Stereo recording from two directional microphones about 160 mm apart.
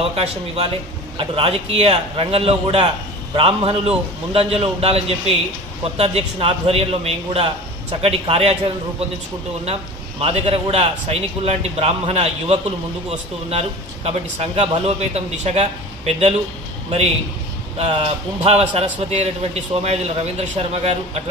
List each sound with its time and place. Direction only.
0.0 s a man's voice: 40° right (ahead or behind)
10.2 s a man's voice: 40° right (ahead or behind)
17.7 s a man's voice: 40° right (ahead or behind)